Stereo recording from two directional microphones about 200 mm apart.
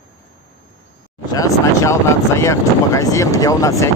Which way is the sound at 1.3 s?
15° left (ahead or behind).